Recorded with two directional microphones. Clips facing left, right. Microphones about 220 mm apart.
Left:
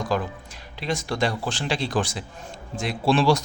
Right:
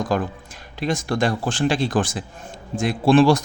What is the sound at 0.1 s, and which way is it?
Speech, 50° right (ahead or behind).